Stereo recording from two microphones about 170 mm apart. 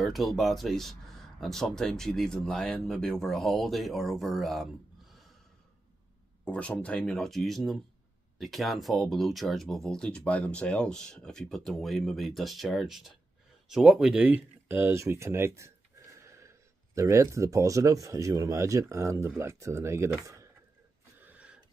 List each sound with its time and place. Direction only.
0.0 s speech: centre (ahead or behind)
6.4 s speech: 5° left (ahead or behind); by 20.4 s 15° right (ahead or behind)
21.3 s a sound: 5° right (ahead or behind)